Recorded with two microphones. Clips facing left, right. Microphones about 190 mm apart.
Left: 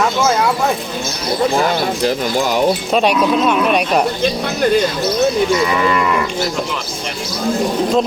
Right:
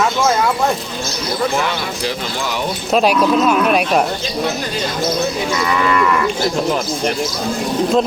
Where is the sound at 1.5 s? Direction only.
40° left (ahead or behind).